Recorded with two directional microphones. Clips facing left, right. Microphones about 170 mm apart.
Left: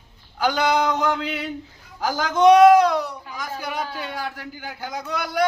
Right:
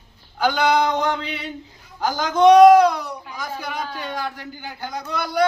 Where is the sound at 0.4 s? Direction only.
5° left (ahead or behind).